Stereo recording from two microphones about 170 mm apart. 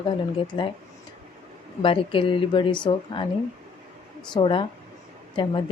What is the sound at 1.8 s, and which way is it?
A woman's voice, 30° left (ahead or behind).